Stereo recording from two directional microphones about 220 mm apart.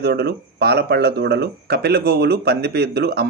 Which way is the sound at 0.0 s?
45° right (ahead or behind).